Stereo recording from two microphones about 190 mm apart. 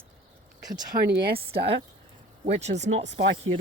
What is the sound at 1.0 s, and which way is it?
Speech, 55° right (ahead or behind).